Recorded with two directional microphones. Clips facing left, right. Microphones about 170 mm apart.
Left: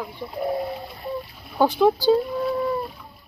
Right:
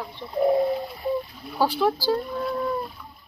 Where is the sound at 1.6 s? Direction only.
20° left (ahead or behind).